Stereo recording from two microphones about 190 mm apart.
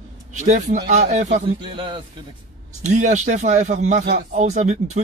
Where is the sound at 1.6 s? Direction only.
25° right (ahead or behind).